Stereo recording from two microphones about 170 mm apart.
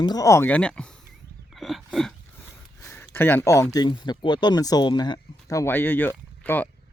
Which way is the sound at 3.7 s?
25° left (ahead or behind).